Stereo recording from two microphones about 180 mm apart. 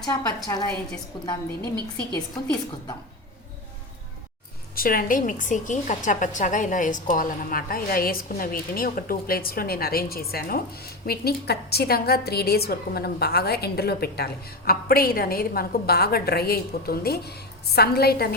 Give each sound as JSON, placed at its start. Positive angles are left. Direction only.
{"t": 0.0, "sound": "a woman's voice", "side_deg": 15}
{"t": 4.7, "sound": "a woman's voice", "side_deg": 55}